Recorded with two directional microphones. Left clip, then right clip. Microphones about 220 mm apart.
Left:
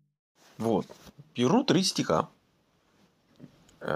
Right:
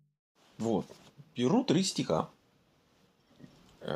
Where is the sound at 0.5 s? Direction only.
35° left (ahead or behind).